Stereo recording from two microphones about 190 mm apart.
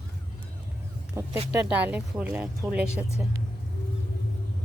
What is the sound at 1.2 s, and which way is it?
A woman's voice, 15° right (ahead or behind).